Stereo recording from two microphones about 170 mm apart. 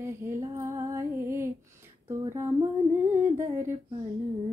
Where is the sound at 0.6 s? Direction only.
15° right (ahead or behind).